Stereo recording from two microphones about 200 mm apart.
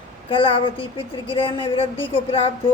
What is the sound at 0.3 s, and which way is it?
A woman's voice, 25° left (ahead or behind).